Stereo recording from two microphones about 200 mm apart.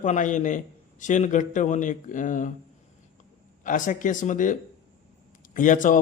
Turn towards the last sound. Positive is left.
turn(degrees=40)  # may be behind; listen again after turning